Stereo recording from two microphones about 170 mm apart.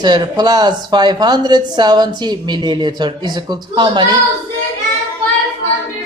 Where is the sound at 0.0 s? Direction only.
25° right (ahead or behind).